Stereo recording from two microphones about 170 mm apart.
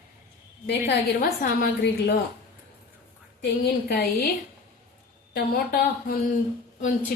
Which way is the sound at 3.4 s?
65° left (ahead or behind).